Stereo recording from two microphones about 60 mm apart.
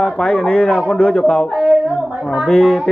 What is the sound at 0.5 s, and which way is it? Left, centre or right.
Speech, left.